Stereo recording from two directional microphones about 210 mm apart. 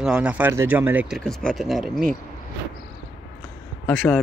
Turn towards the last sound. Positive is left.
turn(degrees=5)  # may be behind; listen again after turning